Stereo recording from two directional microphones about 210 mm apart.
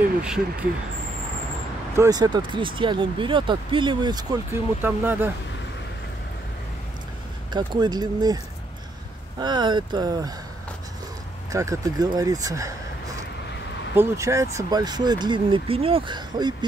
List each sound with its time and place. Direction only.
0.2 s speech: 5° right (ahead or behind)
2.0 s speech: 20° right (ahead or behind)
7.5 s speech: 20° right (ahead or behind)
9.4 s speech: 20° right (ahead or behind)
11.5 s speech: 15° right (ahead or behind)
13.9 s speech: 15° right (ahead or behind)